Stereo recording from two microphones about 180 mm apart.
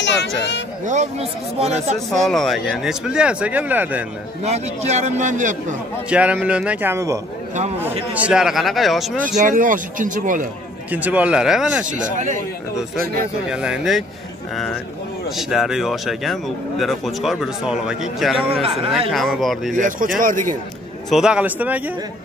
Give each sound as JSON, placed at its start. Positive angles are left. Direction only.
{"t": 0.0, "sound": "speech", "side_deg": 75}
{"t": 0.8, "sound": "a man's voice", "side_deg": -40}
{"t": 2.1, "sound": "speech", "side_deg": 0}
{"t": 4.4, "sound": "a man's voice", "side_deg": -40}
{"t": 6.0, "sound": "speech", "side_deg": -5}
{"t": 9.4, "sound": "speech", "side_deg": -45}
{"t": 10.9, "sound": "speech", "side_deg": -10}
{"t": 13.5, "sound": "speech", "side_deg": -5}
{"t": 15.2, "sound": "speech", "side_deg": 0}
{"t": 18.5, "sound": "a man's voice", "side_deg": -30}
{"t": 19.0, "sound": "speech", "side_deg": 0}
{"t": 19.7, "sound": "speech", "side_deg": -45}
{"t": 21.1, "sound": "speech", "side_deg": -5}